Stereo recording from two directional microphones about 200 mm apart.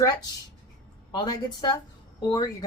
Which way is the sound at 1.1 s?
20° left (ahead or behind).